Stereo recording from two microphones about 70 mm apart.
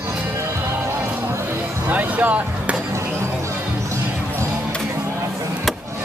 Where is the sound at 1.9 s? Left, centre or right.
Right.